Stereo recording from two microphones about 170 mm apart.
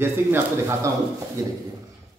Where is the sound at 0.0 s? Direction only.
15° right (ahead or behind).